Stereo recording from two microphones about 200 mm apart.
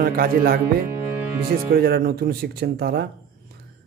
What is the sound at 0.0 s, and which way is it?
Speech, 45° right (ahead or behind).